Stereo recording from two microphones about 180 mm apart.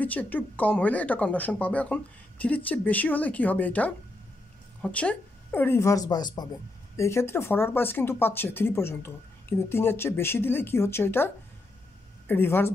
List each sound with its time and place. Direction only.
0.0 s speech: 10° left (ahead or behind)